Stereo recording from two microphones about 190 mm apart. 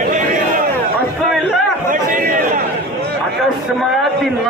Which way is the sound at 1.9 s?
45° right (ahead or behind).